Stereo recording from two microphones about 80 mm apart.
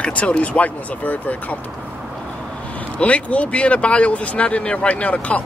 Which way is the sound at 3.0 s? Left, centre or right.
Centre.